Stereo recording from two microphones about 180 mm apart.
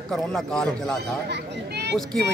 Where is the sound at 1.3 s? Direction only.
70° right (ahead or behind).